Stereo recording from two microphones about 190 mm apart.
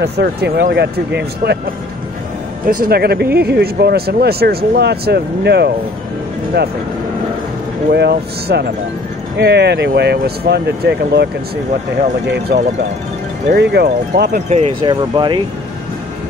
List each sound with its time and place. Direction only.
0.0 s speech: 60° right (ahead or behind)
2.6 s speech: 50° right (ahead or behind)
7.9 s speech: 60° right (ahead or behind)
12.5 s speech: 60° right (ahead or behind)
14.3 s speech: 40° right (ahead or behind)
14.8 s speech: 25° right (ahead or behind)